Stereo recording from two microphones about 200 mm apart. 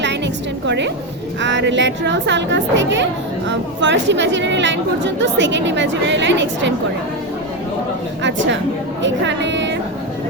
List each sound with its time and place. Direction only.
1.4 s a woman's voice: 65° right (ahead or behind)
8.2 s a woman's voice: 65° right (ahead or behind)